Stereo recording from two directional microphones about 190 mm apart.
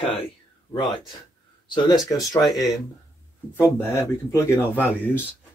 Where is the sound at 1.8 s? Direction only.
20° left (ahead or behind).